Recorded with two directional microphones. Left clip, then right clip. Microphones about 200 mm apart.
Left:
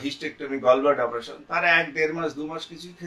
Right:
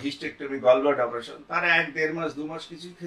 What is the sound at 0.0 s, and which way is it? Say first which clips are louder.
Speech: left 1 dB; 15° left (ahead or behind).